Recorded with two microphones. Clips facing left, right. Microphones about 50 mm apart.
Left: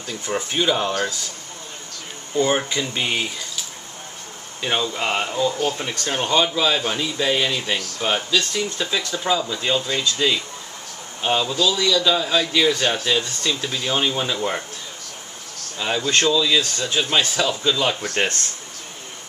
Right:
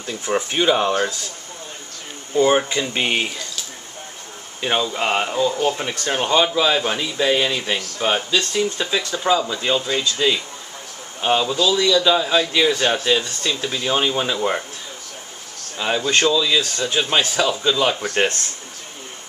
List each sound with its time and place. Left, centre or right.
0.0 s speech: right
2.3 s speech: centre
4.6 s speech: centre
15.8 s speech: centre